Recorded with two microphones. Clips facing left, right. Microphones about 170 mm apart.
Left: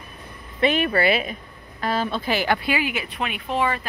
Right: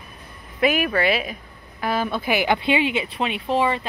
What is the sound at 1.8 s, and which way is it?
Speech, 10° right (ahead or behind).